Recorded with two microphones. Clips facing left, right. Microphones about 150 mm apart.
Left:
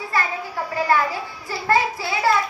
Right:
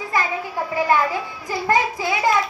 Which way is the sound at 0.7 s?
15° right (ahead or behind).